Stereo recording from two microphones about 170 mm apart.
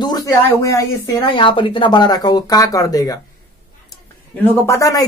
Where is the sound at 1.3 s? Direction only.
30° left (ahead or behind).